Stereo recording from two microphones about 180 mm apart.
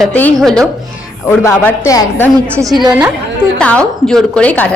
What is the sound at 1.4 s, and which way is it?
Speech, 15° left (ahead or behind).